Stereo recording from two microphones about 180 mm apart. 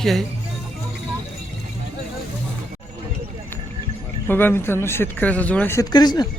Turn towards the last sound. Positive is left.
turn(degrees=20)  # may be behind; listen again after turning